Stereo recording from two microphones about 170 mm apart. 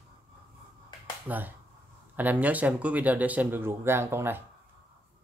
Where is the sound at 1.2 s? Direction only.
10° right (ahead or behind).